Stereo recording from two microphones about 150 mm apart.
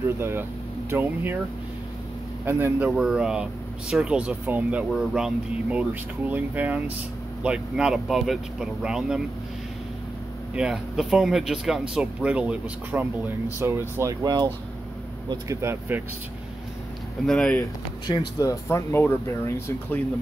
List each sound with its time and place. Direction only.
0.2 s speech: 15° right (ahead or behind)
2.4 s speech: 15° right (ahead or behind)
10.5 s speech: 5° right (ahead or behind)
17.3 s speech: 5° left (ahead or behind)
18.0 s speech: 25° left (ahead or behind)